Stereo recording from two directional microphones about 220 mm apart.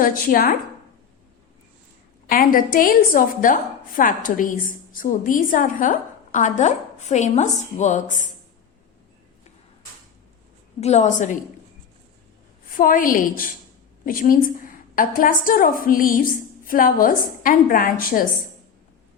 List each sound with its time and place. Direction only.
0.0 s a woman's voice: 40° left (ahead or behind)
2.3 s a woman's voice: 40° left (ahead or behind)
10.8 s a woman's voice: 30° left (ahead or behind)
12.7 s a woman's voice: 40° left (ahead or behind)